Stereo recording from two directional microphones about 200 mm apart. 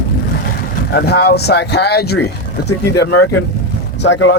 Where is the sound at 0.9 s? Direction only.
55° left (ahead or behind).